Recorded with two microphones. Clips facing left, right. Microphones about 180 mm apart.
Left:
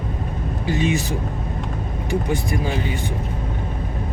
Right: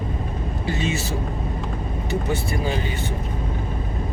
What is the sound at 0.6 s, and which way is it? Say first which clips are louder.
Speech: left 5 dB; 15° left (ahead or behind).